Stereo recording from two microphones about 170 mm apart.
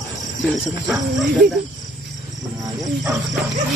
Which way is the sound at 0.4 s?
Centre (ahead or behind).